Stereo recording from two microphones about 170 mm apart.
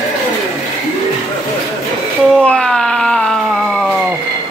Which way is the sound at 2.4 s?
5° left (ahead or behind).